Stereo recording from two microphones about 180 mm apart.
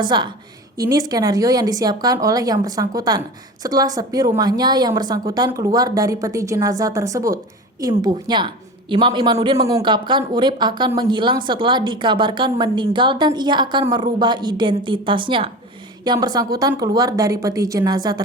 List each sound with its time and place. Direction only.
0.0 s a woman's voice: 25° right (ahead or behind)